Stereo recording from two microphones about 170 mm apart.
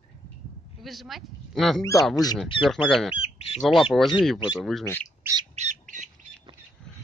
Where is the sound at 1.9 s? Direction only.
Centre (ahead or behind).